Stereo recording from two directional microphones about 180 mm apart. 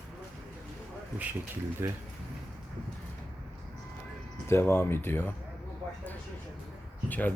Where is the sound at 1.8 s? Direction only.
15° right (ahead or behind).